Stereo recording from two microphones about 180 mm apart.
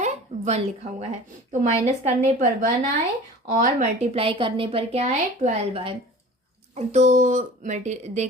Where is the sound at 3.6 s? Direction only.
40° right (ahead or behind).